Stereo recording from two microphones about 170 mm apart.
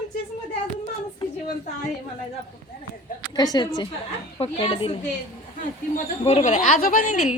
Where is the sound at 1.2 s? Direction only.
30° left (ahead or behind).